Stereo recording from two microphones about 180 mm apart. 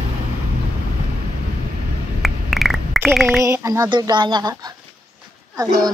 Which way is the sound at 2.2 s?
Centre (ahead or behind).